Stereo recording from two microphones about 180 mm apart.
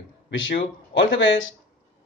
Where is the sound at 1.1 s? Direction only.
90° left.